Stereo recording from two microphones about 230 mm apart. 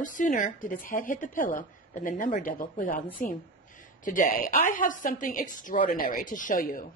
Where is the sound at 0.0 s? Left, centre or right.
Left.